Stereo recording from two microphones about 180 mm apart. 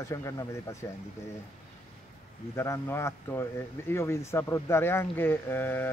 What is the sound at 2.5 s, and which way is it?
Speech, 15° left (ahead or behind).